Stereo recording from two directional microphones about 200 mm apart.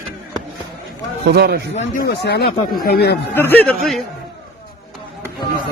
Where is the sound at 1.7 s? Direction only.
40° left (ahead or behind).